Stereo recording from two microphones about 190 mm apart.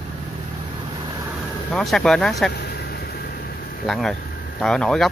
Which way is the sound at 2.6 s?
55° left (ahead or behind).